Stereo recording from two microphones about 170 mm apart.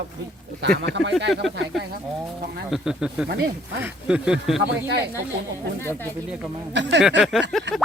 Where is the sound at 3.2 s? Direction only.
75° right (ahead or behind).